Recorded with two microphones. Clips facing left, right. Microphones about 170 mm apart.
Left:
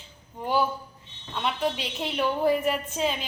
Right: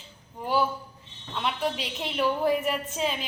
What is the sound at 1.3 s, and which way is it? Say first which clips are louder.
A woman's voice: left 1 dB; centre (ahead or behind).